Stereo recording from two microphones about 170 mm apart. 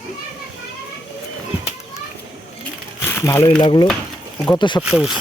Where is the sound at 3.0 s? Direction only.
15° left (ahead or behind).